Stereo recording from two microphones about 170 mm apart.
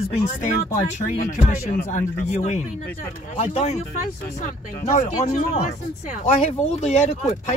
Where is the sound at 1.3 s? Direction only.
50° left (ahead or behind).